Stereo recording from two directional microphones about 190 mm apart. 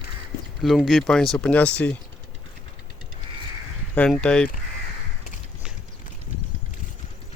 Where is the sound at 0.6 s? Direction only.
Centre (ahead or behind).